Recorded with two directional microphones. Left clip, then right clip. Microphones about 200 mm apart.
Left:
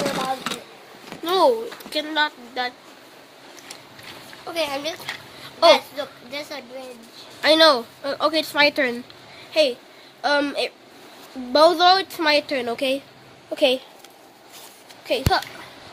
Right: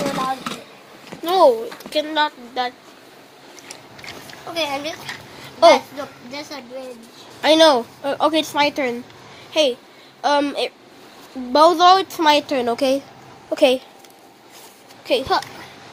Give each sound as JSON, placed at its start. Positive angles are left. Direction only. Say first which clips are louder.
{"t": 1.2, "sound": "a woman's voice", "louder": "right 4 dB", "side_deg": 10}
{"t": 4.6, "sound": "a child's voice", "louder": "right 2 dB", "side_deg": 35}
{"t": 7.4, "sound": "a woman's voice", "louder": "right 2 dB", "side_deg": 0}
{"t": 8.5, "sound": "speech", "louder": "even", "side_deg": 20}
{"t": 9.5, "sound": "a child's voice", "louder": "right 1 dB", "side_deg": 0}
{"t": 15.0, "sound": "a woman's voice", "louder": "right 3 dB", "side_deg": -5}